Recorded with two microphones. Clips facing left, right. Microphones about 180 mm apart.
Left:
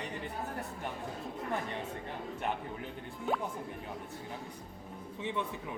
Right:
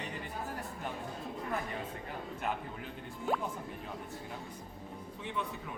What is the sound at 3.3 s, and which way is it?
Speech, centre (ahead or behind).